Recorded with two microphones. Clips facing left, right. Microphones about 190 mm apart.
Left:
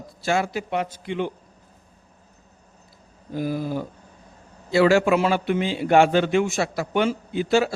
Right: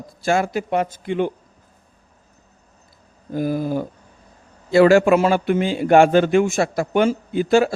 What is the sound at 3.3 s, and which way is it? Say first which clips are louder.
A man's voice: right 4 dB; 50° right (ahead or behind).